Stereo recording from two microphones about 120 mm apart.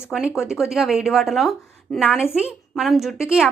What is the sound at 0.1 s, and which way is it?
A woman's voice, 5° right (ahead or behind).